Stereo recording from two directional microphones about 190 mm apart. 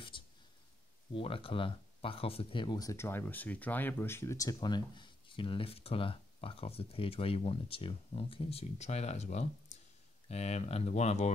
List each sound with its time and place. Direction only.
1.1 s speech: 30° left (ahead or behind)